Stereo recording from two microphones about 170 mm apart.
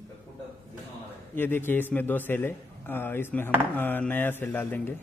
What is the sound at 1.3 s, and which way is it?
A man's voice, 10° left (ahead or behind).